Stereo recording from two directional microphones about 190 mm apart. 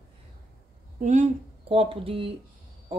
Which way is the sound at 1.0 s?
40° right (ahead or behind).